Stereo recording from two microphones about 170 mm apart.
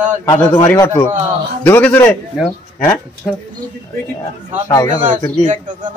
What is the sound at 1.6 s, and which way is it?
Speech, 10° left (ahead or behind).